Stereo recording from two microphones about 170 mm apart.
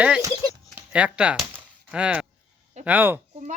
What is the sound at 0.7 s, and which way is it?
Chop, 5° right (ahead or behind).